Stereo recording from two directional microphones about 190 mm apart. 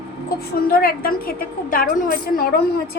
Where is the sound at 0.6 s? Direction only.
55° left (ahead or behind).